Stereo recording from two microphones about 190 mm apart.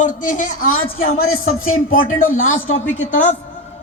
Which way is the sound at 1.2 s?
90° left.